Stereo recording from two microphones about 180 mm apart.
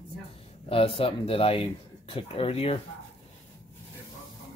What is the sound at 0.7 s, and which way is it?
Speech, 30° left (ahead or behind).